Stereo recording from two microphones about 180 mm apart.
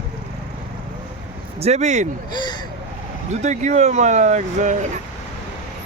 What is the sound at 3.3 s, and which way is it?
Speech, 40° right (ahead or behind).